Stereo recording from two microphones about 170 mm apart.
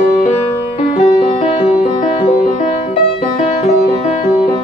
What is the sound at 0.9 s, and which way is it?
Music, 40° left (ahead or behind).